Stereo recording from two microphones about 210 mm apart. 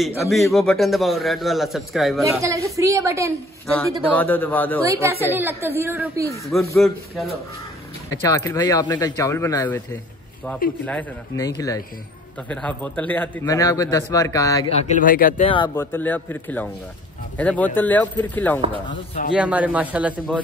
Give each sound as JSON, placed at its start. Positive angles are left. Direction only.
{"t": 0.2, "sound": "a man's voice", "side_deg": 0}
{"t": 2.4, "sound": "a man's voice", "side_deg": -15}
{"t": 3.6, "sound": "a man's voice", "side_deg": 5}
{"t": 5.3, "sound": "a man's voice", "side_deg": -10}
{"t": 6.8, "sound": "a man's voice", "side_deg": 0}
{"t": 8.1, "sound": "a man's voice", "side_deg": 15}
{"t": 10.9, "sound": "a man's voice", "side_deg": 10}
{"t": 14.7, "sound": "speech", "side_deg": 30}
{"t": 15.4, "sound": "speech", "side_deg": 20}
{"t": 15.8, "sound": "a man's voice", "side_deg": 10}
{"t": 19.3, "sound": "a man's voice", "side_deg": -5}